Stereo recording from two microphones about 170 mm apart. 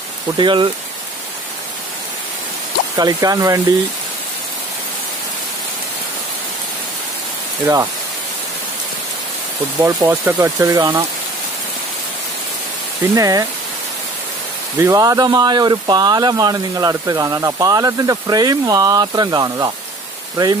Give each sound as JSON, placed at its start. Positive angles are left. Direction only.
{"t": 0.4, "sound": "speech", "side_deg": -30}
{"t": 3.0, "sound": "speech", "side_deg": -20}
{"t": 7.6, "sound": "speech", "side_deg": -20}
{"t": 9.8, "sound": "speech", "side_deg": -20}
{"t": 13.1, "sound": "speech", "side_deg": -20}
{"t": 14.8, "sound": "speech", "side_deg": -20}